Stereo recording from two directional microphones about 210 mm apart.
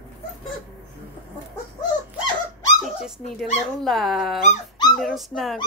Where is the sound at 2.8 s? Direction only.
Centre (ahead or behind).